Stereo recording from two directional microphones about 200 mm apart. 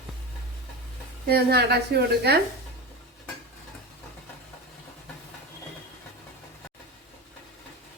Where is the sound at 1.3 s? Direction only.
55° right (ahead or behind).